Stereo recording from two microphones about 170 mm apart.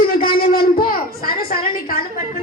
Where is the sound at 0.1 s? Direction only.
60° left (ahead or behind).